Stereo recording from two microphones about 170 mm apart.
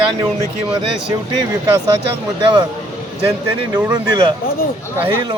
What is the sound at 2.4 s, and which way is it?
Speech, 25° right (ahead or behind).